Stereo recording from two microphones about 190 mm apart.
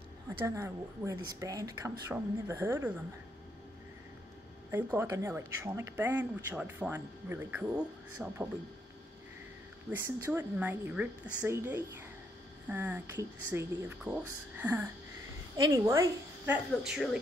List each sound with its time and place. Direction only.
0.4 s speech: 15° right (ahead or behind)
4.6 s speech: 10° right (ahead or behind)
9.8 s a woman's voice: 10° right (ahead or behind)
16.8 s speech: centre (ahead or behind)